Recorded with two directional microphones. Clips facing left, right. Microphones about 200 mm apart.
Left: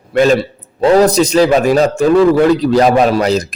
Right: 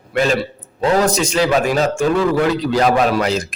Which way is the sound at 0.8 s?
35° left (ahead or behind).